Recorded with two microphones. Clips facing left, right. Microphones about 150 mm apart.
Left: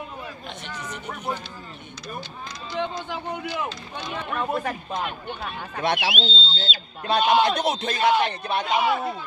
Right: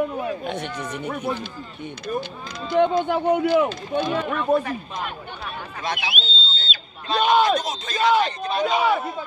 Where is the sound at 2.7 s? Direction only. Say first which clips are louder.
Right 11 dB; 55° right (ahead or behind).